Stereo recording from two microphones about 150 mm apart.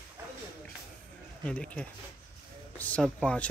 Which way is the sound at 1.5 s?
10° left (ahead or behind).